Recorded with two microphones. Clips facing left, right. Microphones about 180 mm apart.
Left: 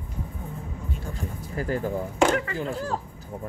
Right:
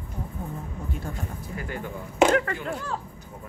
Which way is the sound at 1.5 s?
35° left (ahead or behind).